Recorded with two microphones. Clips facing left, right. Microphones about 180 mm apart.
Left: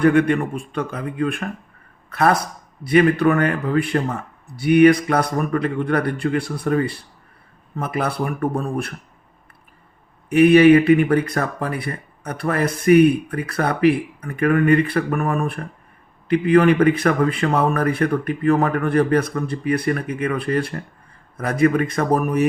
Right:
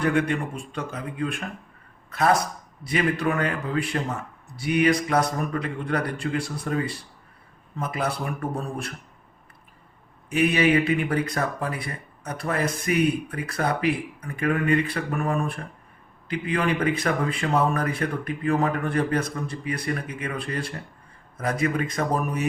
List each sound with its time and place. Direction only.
0.0 s speech: 55° left (ahead or behind)
10.2 s speech: 60° left (ahead or behind)